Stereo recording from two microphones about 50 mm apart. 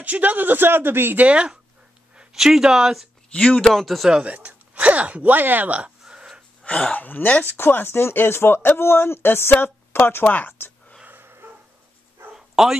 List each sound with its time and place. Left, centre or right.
0.0 s speech: right
1.2 s speech: right
2.1 s speech: centre
3.3 s speech: left
3.6 s speech: centre
4.2 s speech: right
5.8 s a sound: right
6.9 s speech: left
8.8 s speech: left
10.2 s speech: left
11.1 s a sound: right
12.4 s bow-wow: centre